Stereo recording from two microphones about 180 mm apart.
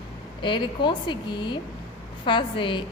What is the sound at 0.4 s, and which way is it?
A woman's voice, 25° left (ahead or behind).